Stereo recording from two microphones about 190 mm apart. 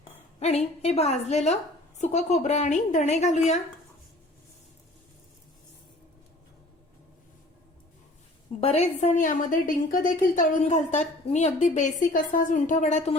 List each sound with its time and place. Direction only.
0.3 s a woman's voice: 35° left (ahead or behind)
8.6 s a woman's voice: 35° left (ahead or behind)